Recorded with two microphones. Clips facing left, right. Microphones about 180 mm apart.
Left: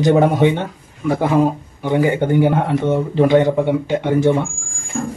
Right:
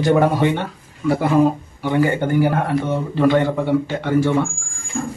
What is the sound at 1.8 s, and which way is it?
Speech, 15° left (ahead or behind).